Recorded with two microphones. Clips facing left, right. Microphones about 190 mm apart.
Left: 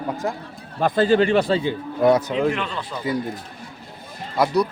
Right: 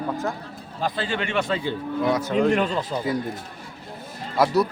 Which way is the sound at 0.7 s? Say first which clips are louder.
Left 10 dB; 50° left (ahead or behind).